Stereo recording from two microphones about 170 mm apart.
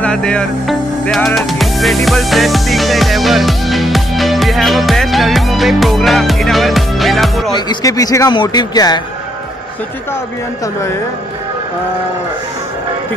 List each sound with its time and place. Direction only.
0.0 s music: 5° left (ahead or behind)
7.5 s speech: 20° left (ahead or behind)